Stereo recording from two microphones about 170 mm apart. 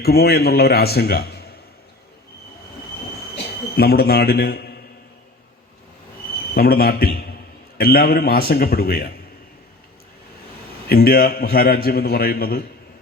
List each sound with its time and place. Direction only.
0.0 s a man's voice: 65° left (ahead or behind)
3.8 s a man's voice: 65° left (ahead or behind)
6.5 s a man's voice: 65° left (ahead or behind)
10.8 s a man's voice: 65° left (ahead or behind)